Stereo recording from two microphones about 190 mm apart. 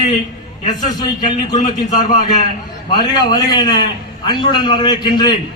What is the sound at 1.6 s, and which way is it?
Speech, 40° left (ahead or behind).